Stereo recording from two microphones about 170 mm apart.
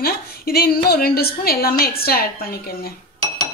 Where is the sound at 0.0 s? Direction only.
65° left (ahead or behind).